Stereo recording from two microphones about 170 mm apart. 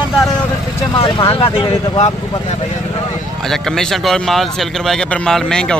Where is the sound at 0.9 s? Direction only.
30° left (ahead or behind).